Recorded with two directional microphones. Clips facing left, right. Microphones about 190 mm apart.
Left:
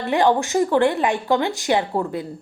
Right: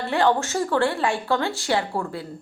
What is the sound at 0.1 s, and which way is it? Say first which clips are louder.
A woman's voice: left 3 dB; 15° left (ahead or behind).